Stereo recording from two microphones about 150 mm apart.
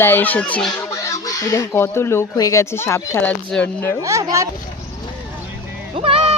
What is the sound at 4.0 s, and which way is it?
Speech, 20° right (ahead or behind).